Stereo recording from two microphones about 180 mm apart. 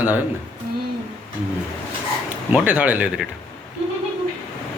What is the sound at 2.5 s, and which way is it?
Speech, 10° right (ahead or behind).